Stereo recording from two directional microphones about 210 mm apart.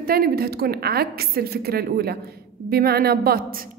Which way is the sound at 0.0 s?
45° right (ahead or behind).